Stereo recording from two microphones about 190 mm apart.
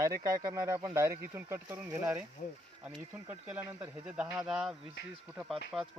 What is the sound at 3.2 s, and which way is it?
Speech, 10° right (ahead or behind).